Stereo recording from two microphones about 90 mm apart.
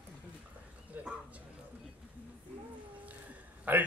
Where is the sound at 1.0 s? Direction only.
20° right (ahead or behind).